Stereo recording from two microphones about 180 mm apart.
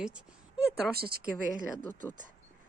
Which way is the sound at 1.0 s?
60° right (ahead or behind).